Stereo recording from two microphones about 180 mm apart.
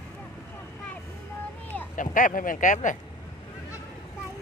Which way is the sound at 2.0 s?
45° left (ahead or behind).